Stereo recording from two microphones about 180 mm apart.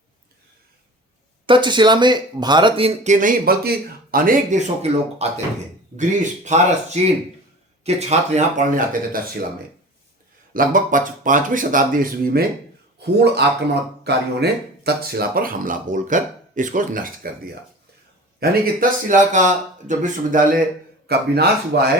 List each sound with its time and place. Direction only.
1.5 s speech: 25° right (ahead or behind); by 9.2 s 50° right (ahead or behind)
10.5 s speech: 50° right (ahead or behind)
13.0 s speech: 65° right (ahead or behind); by 20.4 s 45° right (ahead or behind)
21.1 s speech: 60° right (ahead or behind)